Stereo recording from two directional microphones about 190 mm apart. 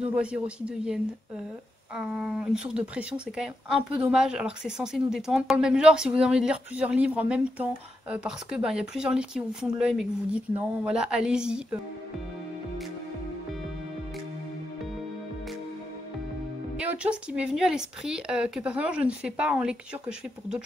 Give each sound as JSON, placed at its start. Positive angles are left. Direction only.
{"t": 0.0, "sound": "speech", "side_deg": -5}
{"t": 16.7, "sound": "speech", "side_deg": -5}